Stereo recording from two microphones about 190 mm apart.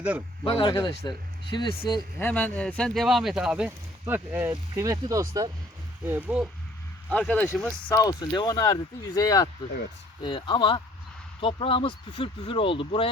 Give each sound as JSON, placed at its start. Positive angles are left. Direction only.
{"t": 0.4, "sound": "speech", "side_deg": 25}
{"t": 2.1, "sound": "speech", "side_deg": 10}
{"t": 7.1, "sound": "speech", "side_deg": 10}
{"t": 7.9, "sound": "speech", "side_deg": 20}